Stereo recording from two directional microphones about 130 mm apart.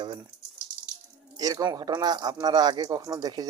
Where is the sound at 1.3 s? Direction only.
30° right (ahead or behind).